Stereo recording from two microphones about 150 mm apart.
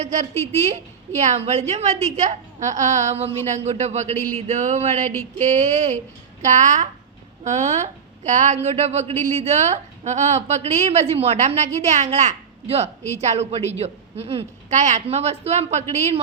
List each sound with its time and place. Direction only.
0.0 s a woman's voice: 50° right (ahead or behind)